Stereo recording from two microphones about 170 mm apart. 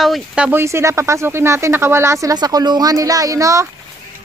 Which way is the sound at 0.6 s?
15° right (ahead or behind).